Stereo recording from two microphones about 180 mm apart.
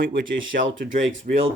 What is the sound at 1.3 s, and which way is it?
Speech, 50° right (ahead or behind).